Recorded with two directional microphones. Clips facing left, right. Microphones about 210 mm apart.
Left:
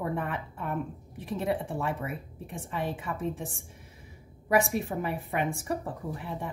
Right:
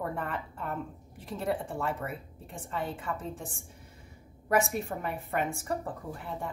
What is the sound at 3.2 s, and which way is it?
Speech, 65° left (ahead or behind).